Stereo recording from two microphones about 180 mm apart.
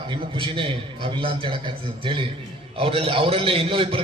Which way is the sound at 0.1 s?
30° right (ahead or behind).